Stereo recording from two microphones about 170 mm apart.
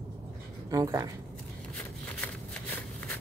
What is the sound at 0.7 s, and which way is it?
Speech, 20° right (ahead or behind).